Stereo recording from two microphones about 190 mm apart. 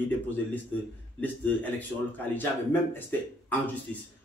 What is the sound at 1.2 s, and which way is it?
A man's voice, 10° left (ahead or behind).